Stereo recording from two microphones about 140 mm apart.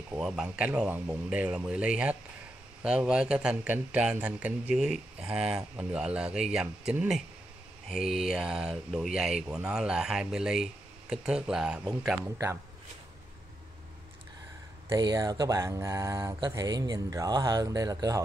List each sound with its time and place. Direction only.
0.2 s speech: 5° right (ahead or behind)
14.9 s speech: 25° right (ahead or behind)